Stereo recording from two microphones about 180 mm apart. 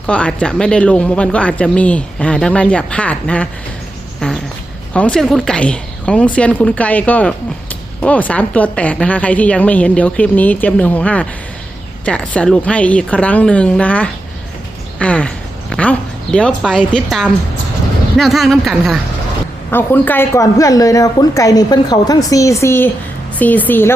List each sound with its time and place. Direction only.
0.1 s speech: 5° left (ahead or behind)
4.9 s speech: 5° left (ahead or behind)
19.7 s speech: 10° left (ahead or behind)